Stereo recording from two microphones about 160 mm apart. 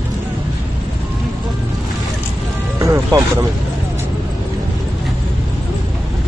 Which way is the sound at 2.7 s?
20° right (ahead or behind).